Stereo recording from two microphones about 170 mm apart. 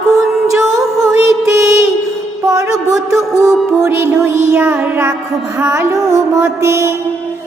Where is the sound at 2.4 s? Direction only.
20° right (ahead or behind).